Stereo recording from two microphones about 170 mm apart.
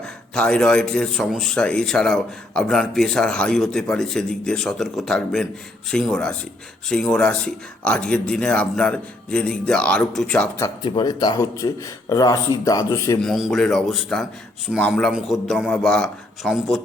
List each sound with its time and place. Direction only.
0.0 s speech: 5° left (ahead or behind)
10.8 s speech: 25° left (ahead or behind)
13.2 s speech: centre (ahead or behind)